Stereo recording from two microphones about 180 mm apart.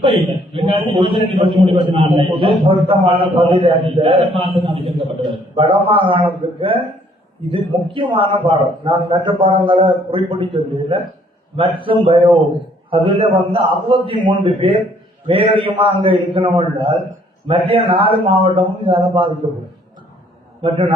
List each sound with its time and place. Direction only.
0.5 s a man's voice: 30° right (ahead or behind)
20.6 s a man's voice: 35° right (ahead or behind)